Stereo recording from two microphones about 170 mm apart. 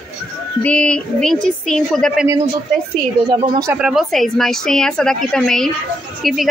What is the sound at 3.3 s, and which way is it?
Speech, 25° right (ahead or behind).